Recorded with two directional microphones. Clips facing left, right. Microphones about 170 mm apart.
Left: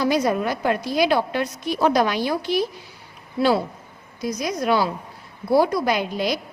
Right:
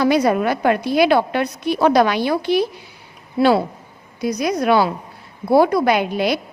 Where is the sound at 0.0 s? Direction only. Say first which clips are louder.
Right 5 dB; 65° right (ahead or behind).